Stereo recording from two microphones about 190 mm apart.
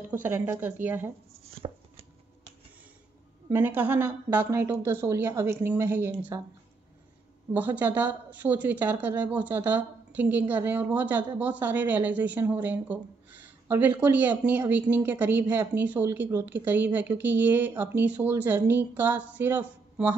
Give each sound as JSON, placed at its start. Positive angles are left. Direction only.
{"t": 0.1, "sound": "speech", "side_deg": -10}
{"t": 1.3, "sound": "chopping", "side_deg": -30}
{"t": 3.4, "sound": "speech", "side_deg": -10}
{"t": 7.5, "sound": "speech", "side_deg": -10}